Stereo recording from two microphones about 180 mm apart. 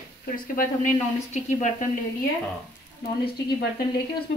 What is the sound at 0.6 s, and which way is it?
Speech, 45° left (ahead or behind).